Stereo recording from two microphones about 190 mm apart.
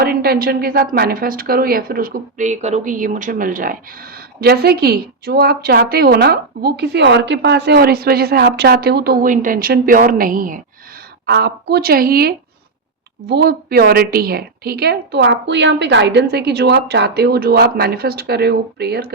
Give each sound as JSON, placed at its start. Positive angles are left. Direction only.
{"t": 0.0, "sound": "a woman's voice", "side_deg": -55}
{"t": 11.3, "sound": "a woman's voice", "side_deg": -60}